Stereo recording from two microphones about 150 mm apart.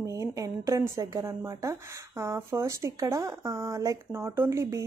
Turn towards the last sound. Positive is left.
turn(degrees=-15)  # may be behind; listen again after turning